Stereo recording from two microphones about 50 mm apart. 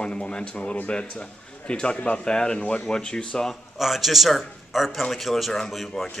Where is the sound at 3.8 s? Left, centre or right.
Centre.